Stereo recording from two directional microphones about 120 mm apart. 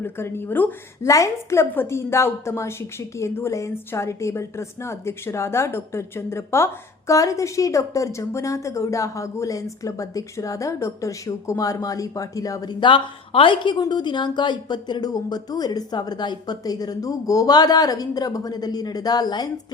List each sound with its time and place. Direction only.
0.0 s a woman's voice: 20° left (ahead or behind)
12.8 s a woman's voice: 45° left (ahead or behind)